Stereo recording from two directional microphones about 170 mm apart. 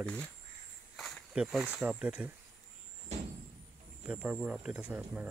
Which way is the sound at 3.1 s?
40° right (ahead or behind).